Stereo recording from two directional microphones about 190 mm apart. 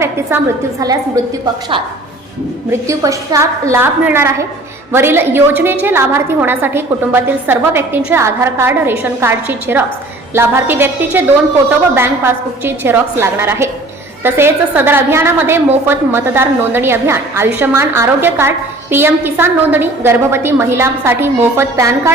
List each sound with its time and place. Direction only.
0.0 s a woman's voice: 15° right (ahead or behind)
2.6 s a woman's voice: 15° right (ahead or behind)